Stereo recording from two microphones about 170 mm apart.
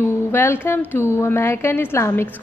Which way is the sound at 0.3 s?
10° left (ahead or behind).